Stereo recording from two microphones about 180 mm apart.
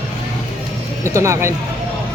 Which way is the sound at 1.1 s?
15° right (ahead or behind).